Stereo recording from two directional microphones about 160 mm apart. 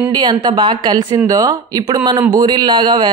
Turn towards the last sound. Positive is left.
turn(degrees=-30)  # may be behind; listen again after turning